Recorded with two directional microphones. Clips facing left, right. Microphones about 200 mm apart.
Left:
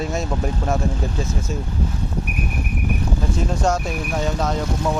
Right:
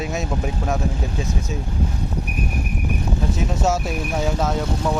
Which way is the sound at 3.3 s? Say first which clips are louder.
Left 1 dB; 5° right (ahead or behind).